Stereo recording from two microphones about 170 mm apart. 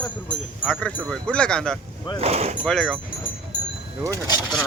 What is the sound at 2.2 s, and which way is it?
Speech, 40° right (ahead or behind).